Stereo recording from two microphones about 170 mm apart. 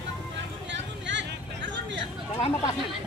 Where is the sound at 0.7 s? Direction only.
90° right.